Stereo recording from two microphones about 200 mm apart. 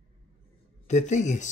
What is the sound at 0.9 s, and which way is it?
Speech, 35° left (ahead or behind).